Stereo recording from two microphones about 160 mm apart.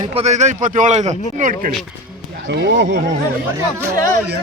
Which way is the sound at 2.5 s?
90° right.